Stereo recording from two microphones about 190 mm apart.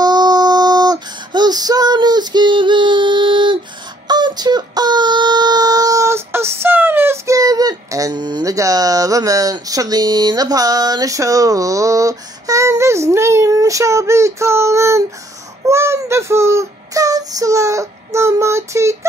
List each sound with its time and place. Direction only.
0.0 s female singing: 20° right (ahead or behind)
4.1 s a sound: 20° right (ahead or behind)
15.6 s child singing: 15° right (ahead or behind)